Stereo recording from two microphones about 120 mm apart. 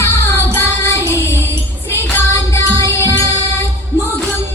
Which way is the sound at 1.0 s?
20° right (ahead or behind).